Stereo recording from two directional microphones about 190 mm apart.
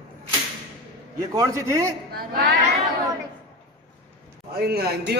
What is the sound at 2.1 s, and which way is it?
Speech, 55° right (ahead or behind).